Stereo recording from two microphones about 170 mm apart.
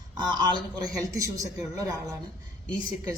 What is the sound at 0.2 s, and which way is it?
A man's voice, 25° right (ahead or behind).